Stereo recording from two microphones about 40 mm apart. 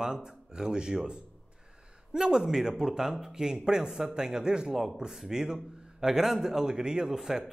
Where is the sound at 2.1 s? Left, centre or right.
Centre.